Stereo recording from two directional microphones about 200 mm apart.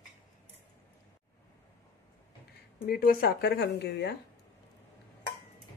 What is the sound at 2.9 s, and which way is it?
A woman's voice, 45° left (ahead or behind).